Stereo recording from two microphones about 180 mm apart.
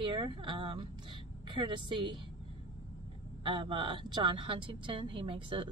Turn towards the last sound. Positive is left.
turn(degrees=-30)  # may be behind; listen again after turning